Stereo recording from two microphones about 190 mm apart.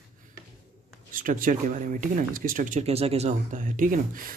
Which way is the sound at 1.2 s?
45° right (ahead or behind).